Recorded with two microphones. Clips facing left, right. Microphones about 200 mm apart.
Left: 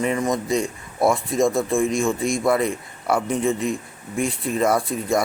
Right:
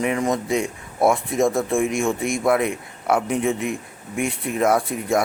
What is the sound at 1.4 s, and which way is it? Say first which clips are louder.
Speech: left 1 dB; 5° right (ahead or behind).